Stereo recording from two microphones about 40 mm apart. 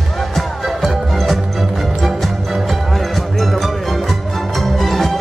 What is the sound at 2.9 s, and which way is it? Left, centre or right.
Music, centre.